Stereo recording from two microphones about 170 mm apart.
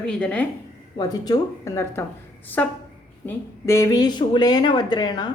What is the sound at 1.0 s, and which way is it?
Speech, 20° left (ahead or behind).